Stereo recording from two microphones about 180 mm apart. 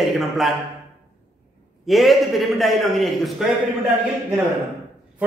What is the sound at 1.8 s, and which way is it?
A man's voice, centre (ahead or behind).